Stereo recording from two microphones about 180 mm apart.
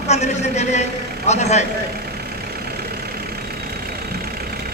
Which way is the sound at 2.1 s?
60° right (ahead or behind).